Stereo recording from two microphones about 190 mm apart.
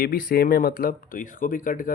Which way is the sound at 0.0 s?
50° left (ahead or behind).